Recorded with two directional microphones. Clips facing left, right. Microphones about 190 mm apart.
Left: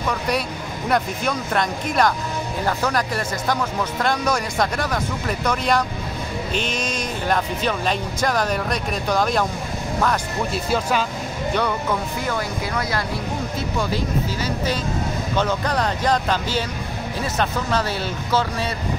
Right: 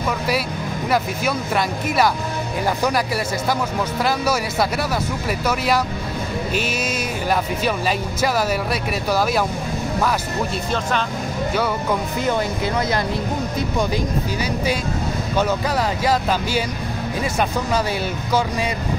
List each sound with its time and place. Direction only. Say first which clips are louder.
0.8 s speech: even; 5° right (ahead or behind)
10.7 s speech: left 3 dB; 5° left (ahead or behind)
12.3 s speech: right 6 dB; 20° right (ahead or behind)